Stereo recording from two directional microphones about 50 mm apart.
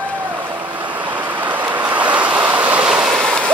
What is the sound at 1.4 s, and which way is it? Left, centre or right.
Waves, right.